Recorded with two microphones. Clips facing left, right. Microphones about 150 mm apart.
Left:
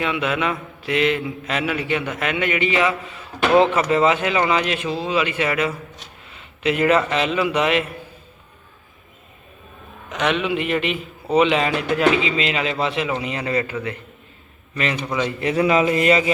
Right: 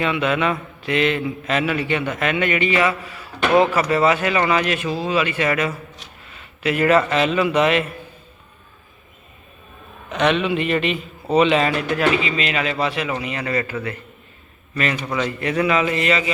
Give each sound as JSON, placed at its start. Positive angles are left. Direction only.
{"t": 0.0, "sound": "a man's voice", "side_deg": 10}
{"t": 10.1, "sound": "a man's voice", "side_deg": 10}
{"t": 15.1, "sound": "speech", "side_deg": 20}